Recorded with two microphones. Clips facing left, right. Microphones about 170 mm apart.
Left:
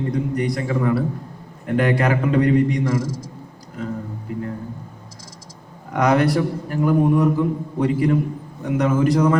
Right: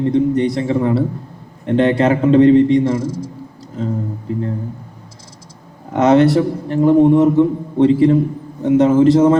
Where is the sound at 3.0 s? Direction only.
90° left.